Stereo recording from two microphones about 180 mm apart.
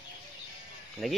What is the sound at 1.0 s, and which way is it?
Speech, centre (ahead or behind).